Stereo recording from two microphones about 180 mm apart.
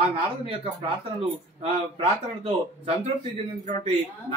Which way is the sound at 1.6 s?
30° right (ahead or behind).